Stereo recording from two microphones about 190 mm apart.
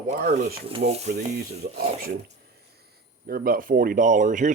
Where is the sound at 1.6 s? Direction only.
55° right (ahead or behind).